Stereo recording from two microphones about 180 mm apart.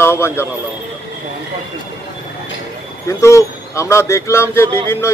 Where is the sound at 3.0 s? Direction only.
15° left (ahead or behind).